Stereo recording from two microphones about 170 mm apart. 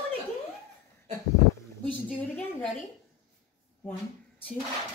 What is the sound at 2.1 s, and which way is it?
Speech, 10° left (ahead or behind).